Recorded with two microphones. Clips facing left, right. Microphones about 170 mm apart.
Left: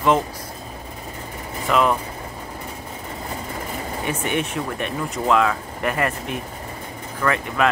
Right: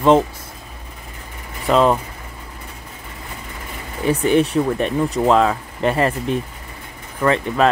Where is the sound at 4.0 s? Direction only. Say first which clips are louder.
Right 9 dB; 35° right (ahead or behind).